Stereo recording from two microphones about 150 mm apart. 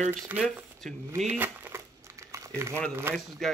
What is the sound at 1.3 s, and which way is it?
Crumpling, 15° right (ahead or behind).